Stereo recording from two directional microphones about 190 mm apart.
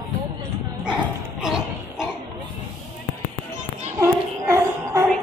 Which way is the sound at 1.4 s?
5° right (ahead or behind).